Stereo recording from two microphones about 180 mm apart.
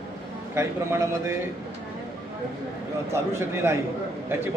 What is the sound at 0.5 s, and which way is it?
Speech, 15° right (ahead or behind).